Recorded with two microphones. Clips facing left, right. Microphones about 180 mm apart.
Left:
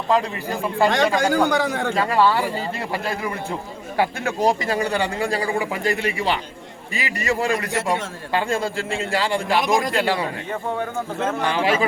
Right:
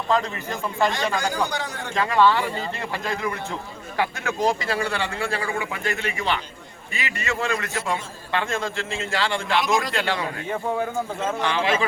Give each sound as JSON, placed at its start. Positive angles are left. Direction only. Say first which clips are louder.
{"t": 0.9, "sound": "a man's voice", "louder": "left 6 dB", "side_deg": 60}
{"t": 2.0, "sound": "a man's voice", "louder": "right 1 dB", "side_deg": 10}
{"t": 3.9, "sound": "a man's voice", "louder": "left 3 dB", "side_deg": 35}
{"t": 11.4, "sound": "a man's voice", "louder": "left 2 dB", "side_deg": 10}